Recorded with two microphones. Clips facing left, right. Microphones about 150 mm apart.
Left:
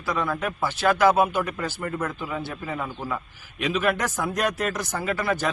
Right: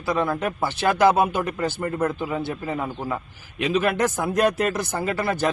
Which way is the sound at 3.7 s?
30° right (ahead or behind).